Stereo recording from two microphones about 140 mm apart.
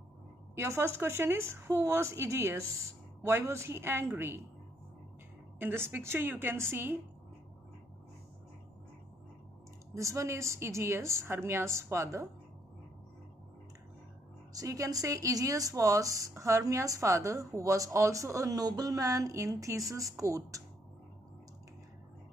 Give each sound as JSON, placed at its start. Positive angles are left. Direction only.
{"t": 0.6, "sound": "a woman's voice", "side_deg": -20}
{"t": 5.6, "sound": "a woman's voice", "side_deg": -15}
{"t": 9.9, "sound": "speech", "side_deg": -20}
{"t": 14.5, "sound": "speech", "side_deg": -25}